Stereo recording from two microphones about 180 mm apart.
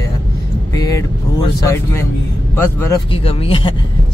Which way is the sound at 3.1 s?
30° left (ahead or behind).